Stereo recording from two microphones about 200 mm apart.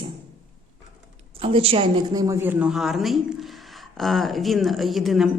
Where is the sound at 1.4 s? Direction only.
30° right (ahead or behind).